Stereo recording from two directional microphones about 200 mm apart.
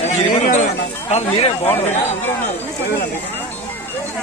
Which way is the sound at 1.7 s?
10° left (ahead or behind).